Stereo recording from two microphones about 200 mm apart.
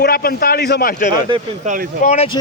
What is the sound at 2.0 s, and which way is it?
Speech, 30° left (ahead or behind).